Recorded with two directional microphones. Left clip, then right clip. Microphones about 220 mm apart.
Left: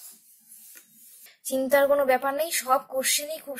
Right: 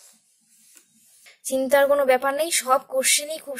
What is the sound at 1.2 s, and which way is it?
A woman's voice, 30° right (ahead or behind).